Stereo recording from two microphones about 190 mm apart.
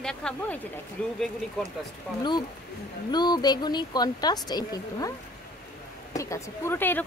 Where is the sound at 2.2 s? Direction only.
20° left (ahead or behind).